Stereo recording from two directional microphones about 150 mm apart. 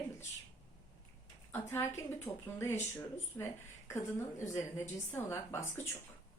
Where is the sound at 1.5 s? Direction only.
15° left (ahead or behind).